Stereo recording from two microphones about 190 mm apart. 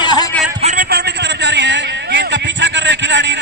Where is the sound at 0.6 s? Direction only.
45° right (ahead or behind).